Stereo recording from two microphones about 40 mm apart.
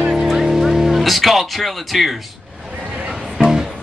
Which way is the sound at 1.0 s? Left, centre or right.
Centre.